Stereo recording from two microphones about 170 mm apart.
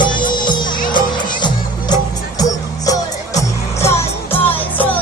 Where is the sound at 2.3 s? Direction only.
20° left (ahead or behind).